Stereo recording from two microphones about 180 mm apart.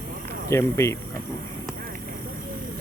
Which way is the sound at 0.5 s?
15° left (ahead or behind).